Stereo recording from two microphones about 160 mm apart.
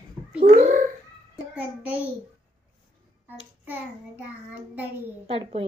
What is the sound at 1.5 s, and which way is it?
Speech, 10° right (ahead or behind).